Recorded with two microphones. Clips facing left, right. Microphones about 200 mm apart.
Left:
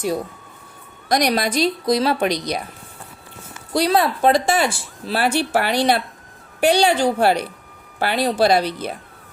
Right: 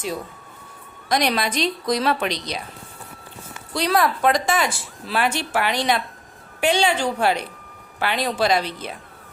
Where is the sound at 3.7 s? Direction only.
30° left (ahead or behind).